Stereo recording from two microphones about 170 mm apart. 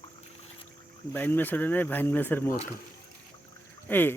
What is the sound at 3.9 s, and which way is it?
Speech, 10° left (ahead or behind).